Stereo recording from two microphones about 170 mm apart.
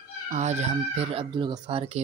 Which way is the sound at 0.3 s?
45° right (ahead or behind).